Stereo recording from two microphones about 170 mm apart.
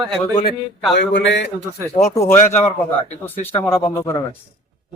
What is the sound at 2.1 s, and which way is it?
A man's voice, 15° left (ahead or behind).